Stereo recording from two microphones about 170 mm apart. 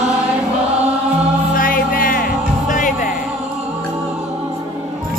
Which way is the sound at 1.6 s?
55° left (ahead or behind).